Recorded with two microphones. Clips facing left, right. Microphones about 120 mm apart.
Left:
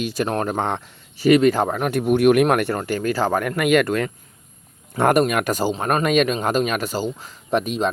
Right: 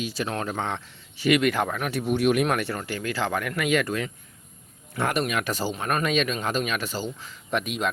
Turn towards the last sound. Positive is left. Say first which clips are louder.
# left 6 dB
turn(degrees=35)  # may be behind; listen again after turning